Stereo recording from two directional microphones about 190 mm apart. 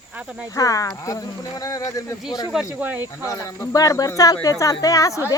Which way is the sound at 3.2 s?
20° left (ahead or behind).